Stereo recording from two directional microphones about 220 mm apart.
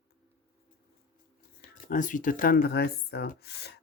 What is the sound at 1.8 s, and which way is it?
Speech, 35° left (ahead or behind).